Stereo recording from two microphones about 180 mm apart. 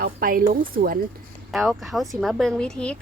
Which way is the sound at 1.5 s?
Centre (ahead or behind).